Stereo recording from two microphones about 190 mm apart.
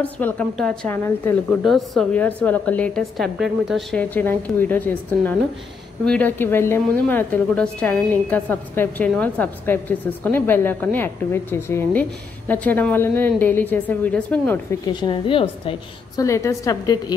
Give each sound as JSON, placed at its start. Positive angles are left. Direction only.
{"t": 0.0, "sound": "a woman's voice", "side_deg": 5}
{"t": 14.9, "sound": "a woman's voice", "side_deg": 25}
{"t": 16.2, "sound": "a woman's voice", "side_deg": 15}